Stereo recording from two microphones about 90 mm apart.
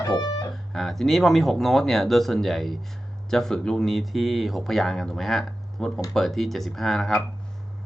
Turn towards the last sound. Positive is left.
turn(degrees=5)  # may be behind; listen again after turning